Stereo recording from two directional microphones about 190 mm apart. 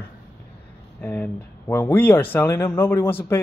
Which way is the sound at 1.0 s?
10° left (ahead or behind).